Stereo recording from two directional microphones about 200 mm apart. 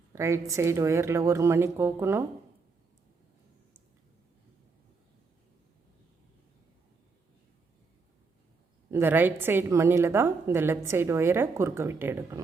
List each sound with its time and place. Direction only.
0.1 s a woman's voice: 15° right (ahead or behind)
8.9 s a woman's voice: 10° right (ahead or behind)